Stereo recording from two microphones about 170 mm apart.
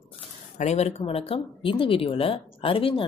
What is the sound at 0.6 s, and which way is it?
Speech, 40° left (ahead or behind).